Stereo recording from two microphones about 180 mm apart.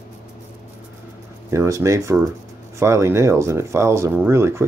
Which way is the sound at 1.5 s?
15° right (ahead or behind).